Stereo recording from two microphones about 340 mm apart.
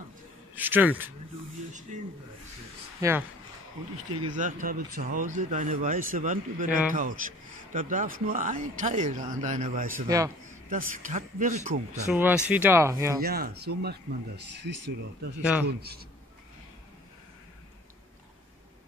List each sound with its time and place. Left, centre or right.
0.6 s speech: centre
3.0 s speech: centre
4.4 s a man's voice: right
10.0 s speech: centre
10.7 s a man's voice: right
12.1 s speech: centre
13.2 s a man's voice: right